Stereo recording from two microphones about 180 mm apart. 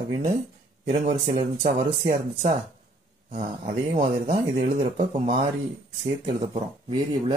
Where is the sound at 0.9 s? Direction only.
40° right (ahead or behind).